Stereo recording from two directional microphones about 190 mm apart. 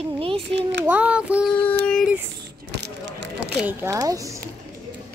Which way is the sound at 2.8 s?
60° right (ahead or behind).